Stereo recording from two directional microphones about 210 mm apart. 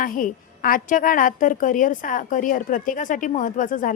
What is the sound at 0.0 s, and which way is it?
A woman's voice, 40° left (ahead or behind).